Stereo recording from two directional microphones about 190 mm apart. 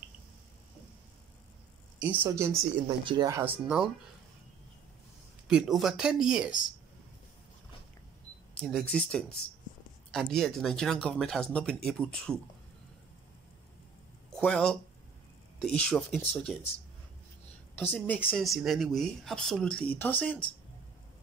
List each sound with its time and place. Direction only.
2.0 s speech: 10° right (ahead or behind)
2.9 s speech: 25° right (ahead or behind)
3.6 s speech: 5° right (ahead or behind)
5.5 s speech: centre (ahead or behind)
8.5 s speech: 5° left (ahead or behind)
14.3 s speech: 5° left (ahead or behind)
17.7 s speech: 10° left (ahead or behind)